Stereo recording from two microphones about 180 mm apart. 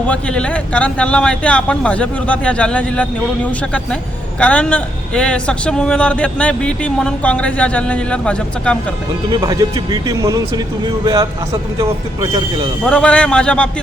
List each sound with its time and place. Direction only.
0.1 s a man's voice: 5° left (ahead or behind)
9.3 s speech: 20° right (ahead or behind)
12.8 s a man's voice: 5° left (ahead or behind)